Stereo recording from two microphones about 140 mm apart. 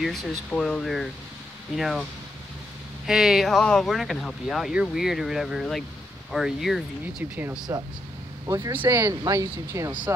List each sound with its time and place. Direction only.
0.0 s speech: centre (ahead or behind)
3.1 s speech: centre (ahead or behind)
7.7 s speech: 20° right (ahead or behind)